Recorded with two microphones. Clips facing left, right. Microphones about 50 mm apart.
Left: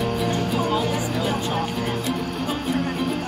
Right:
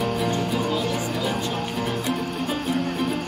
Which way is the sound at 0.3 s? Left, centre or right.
Left.